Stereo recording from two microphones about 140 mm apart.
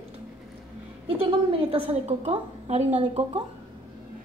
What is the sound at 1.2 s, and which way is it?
A woman's voice, 40° right (ahead or behind).